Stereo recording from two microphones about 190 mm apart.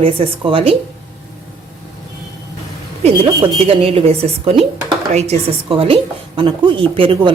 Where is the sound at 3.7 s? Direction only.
30° right (ahead or behind).